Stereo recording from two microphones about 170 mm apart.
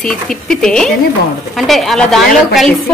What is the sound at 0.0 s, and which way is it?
A woman's voice, 5° left (ahead or behind).